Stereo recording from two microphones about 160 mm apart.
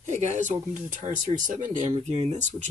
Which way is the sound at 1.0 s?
55° right (ahead or behind).